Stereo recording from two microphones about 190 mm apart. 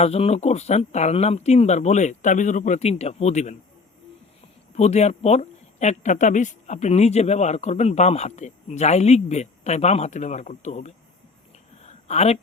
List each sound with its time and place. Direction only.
0.0 s speech: 35° left (ahead or behind)
4.7 s speech: 35° left (ahead or behind)
11.8 s a sound: 35° left (ahead or behind)